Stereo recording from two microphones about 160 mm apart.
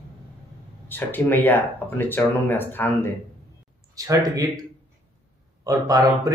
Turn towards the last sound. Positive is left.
turn(degrees=-20)  # may be behind; listen again after turning